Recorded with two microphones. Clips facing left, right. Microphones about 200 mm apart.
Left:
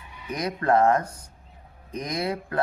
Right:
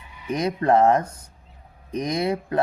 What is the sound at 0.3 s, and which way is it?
Speech, 25° right (ahead or behind).